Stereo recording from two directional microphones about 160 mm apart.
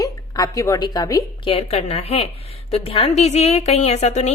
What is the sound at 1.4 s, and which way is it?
A woman's voice, 40° left (ahead or behind).